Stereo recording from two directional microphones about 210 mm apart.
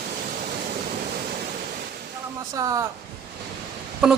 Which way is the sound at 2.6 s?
15° right (ahead or behind).